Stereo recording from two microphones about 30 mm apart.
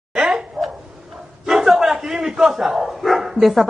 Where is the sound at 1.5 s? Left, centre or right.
Centre.